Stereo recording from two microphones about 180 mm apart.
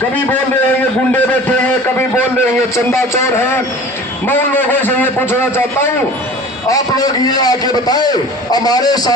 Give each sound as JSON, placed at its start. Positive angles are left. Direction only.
{"t": 1.1, "sound": "a man's voice", "side_deg": 10}